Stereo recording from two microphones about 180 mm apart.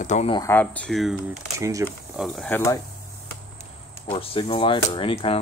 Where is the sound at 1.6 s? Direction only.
20° right (ahead or behind).